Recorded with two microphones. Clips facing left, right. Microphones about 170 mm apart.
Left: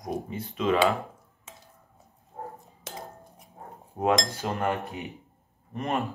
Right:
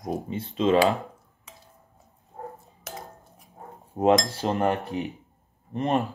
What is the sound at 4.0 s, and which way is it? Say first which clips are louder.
Speech: right 4 dB; 25° right (ahead or behind).